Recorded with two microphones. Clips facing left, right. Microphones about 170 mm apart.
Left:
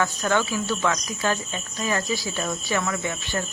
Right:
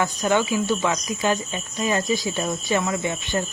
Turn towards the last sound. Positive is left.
turn(degrees=-20)  # may be behind; listen again after turning